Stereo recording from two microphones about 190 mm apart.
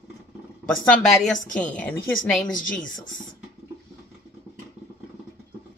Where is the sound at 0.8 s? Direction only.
5° left (ahead or behind).